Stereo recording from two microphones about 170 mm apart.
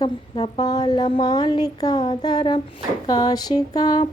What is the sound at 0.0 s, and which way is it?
A woman's voice, 30° left (ahead or behind).